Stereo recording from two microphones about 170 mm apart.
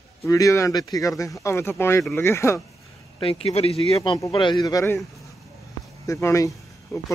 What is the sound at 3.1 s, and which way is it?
Speech, 35° left (ahead or behind).